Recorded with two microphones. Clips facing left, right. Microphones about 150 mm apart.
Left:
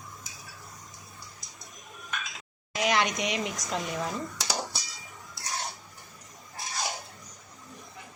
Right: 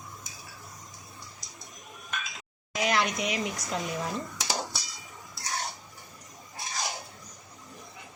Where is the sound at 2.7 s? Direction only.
Centre (ahead or behind).